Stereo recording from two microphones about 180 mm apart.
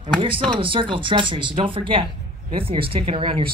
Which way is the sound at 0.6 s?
30° right (ahead or behind).